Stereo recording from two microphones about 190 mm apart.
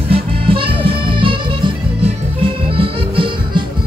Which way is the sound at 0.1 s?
30° right (ahead or behind).